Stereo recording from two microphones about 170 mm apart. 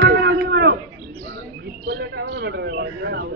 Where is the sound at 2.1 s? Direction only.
80° right.